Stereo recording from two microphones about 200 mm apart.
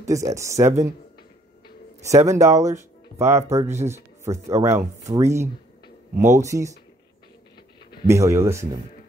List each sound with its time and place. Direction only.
0.0 s speech: 15° right (ahead or behind)
2.0 s speech: 15° right (ahead or behind)
8.1 s speech: 15° right (ahead or behind)